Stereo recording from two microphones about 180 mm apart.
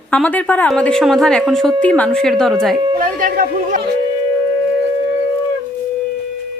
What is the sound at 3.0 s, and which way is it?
Speech, 50° right (ahead or behind).